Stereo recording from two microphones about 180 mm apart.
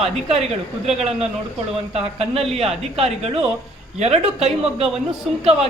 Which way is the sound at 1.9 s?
35° right (ahead or behind).